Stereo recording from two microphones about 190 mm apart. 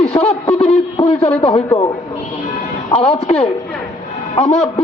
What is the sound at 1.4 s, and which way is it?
Speech, 30° left (ahead or behind).